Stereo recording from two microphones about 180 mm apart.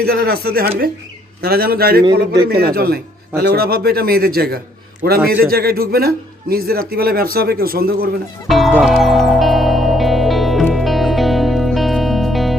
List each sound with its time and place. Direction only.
0.0 s speech: 60° right (ahead or behind)
8.4 s music: centre (ahead or behind)